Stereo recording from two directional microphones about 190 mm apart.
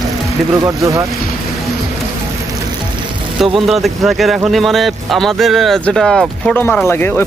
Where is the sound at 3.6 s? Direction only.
Centre (ahead or behind).